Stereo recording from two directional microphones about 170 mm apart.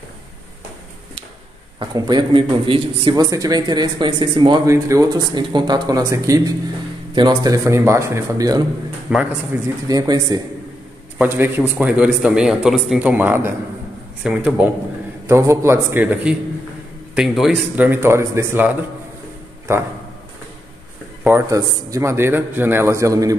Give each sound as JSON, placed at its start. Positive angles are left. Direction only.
{"t": 1.8, "sound": "a man's voice", "side_deg": -25}
{"t": 9.1, "sound": "speech", "side_deg": -10}
{"t": 9.8, "sound": "a man's voice", "side_deg": -20}
{"t": 21.2, "sound": "speech", "side_deg": -15}